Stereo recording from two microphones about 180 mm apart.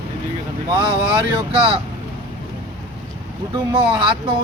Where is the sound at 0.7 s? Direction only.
25° right (ahead or behind).